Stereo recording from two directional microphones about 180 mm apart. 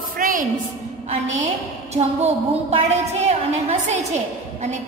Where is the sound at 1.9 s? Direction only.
35° right (ahead or behind).